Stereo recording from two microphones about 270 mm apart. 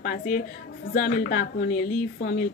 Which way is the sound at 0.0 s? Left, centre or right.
Left.